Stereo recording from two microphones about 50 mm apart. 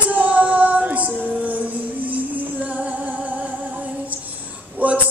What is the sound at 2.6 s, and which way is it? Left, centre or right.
Music, right.